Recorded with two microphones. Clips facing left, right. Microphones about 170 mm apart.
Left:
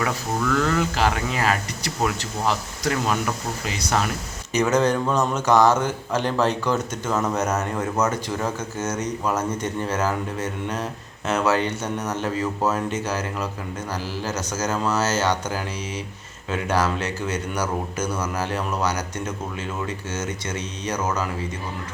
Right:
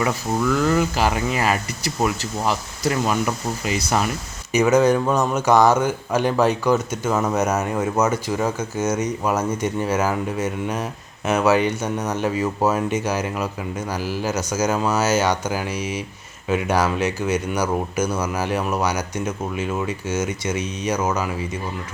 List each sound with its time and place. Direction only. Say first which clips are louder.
0.0 s speech: right 3 dB; 10° right (ahead or behind)